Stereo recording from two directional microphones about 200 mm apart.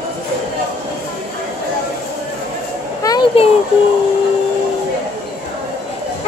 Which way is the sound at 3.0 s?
25° left (ahead or behind).